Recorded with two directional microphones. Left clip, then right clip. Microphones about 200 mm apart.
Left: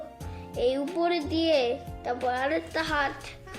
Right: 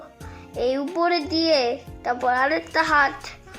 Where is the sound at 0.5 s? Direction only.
20° right (ahead or behind).